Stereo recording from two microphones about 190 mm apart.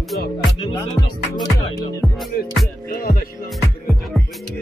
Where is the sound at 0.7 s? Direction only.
25° left (ahead or behind).